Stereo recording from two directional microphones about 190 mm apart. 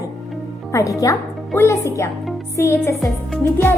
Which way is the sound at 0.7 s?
15° left (ahead or behind).